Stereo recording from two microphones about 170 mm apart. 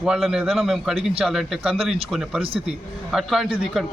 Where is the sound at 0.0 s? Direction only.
5° right (ahead or behind).